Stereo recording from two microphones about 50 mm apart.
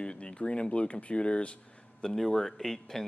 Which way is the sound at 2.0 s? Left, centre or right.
Centre.